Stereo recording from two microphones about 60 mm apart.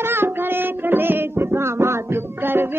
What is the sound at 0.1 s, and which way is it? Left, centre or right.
Music, right.